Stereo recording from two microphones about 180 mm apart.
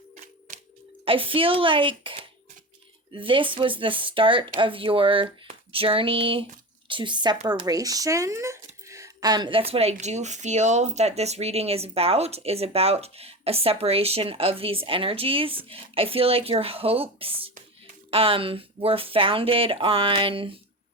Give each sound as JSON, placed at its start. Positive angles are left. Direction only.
{"t": 1.0, "sound": "speech", "side_deg": -30}